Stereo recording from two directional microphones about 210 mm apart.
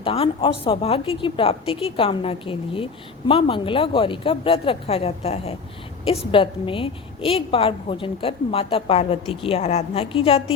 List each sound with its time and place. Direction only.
0.0 s a woman's voice: 25° left (ahead or behind)